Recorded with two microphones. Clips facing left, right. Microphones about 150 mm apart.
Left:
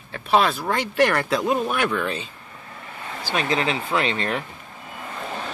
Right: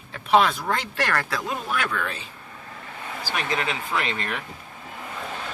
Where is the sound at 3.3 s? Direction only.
25° left (ahead or behind).